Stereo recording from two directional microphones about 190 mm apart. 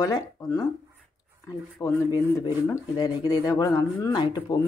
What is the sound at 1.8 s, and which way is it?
Speech, 15° left (ahead or behind).